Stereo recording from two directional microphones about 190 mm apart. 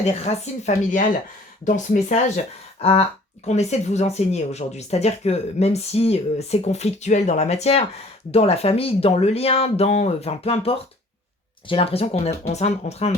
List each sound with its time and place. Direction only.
0.1 s speech: 35° left (ahead or behind)